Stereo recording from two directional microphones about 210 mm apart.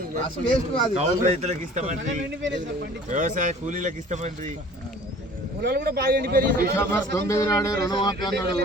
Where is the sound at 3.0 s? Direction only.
35° right (ahead or behind).